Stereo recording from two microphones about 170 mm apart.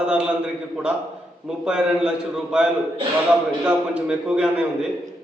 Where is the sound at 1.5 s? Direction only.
5° right (ahead or behind).